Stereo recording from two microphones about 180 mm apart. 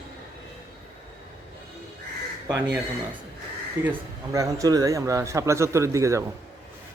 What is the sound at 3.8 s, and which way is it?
Speech, 15° right (ahead or behind).